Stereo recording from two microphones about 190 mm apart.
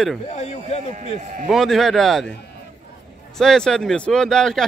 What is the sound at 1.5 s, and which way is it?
Speech, centre (ahead or behind).